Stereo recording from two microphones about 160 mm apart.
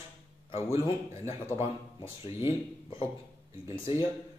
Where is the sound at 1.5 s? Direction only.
40° left (ahead or behind).